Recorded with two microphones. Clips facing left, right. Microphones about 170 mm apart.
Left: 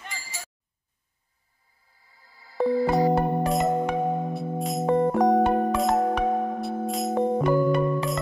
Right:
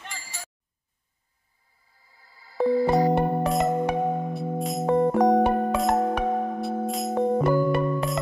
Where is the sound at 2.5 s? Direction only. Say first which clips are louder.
Right 1 dB; centre (ahead or behind).